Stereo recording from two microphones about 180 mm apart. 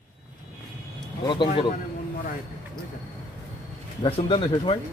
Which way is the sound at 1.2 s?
25° left (ahead or behind).